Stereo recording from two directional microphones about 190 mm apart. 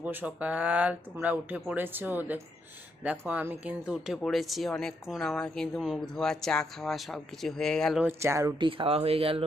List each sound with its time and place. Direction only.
0.0 s speech: 10° right (ahead or behind)
8.2 s speech: 15° right (ahead or behind)